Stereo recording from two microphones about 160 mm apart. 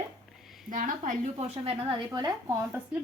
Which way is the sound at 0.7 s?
55° right (ahead or behind).